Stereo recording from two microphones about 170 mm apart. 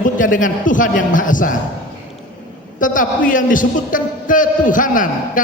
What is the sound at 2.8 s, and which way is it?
A man's voice, 50° left (ahead or behind).